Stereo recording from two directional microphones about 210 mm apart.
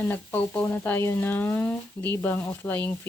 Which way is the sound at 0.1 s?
10° left (ahead or behind).